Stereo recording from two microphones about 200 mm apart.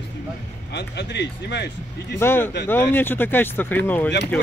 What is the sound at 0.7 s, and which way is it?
Speech, 60° left (ahead or behind).